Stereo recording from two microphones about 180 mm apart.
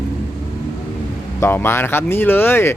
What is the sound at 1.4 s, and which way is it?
Speech, 15° left (ahead or behind).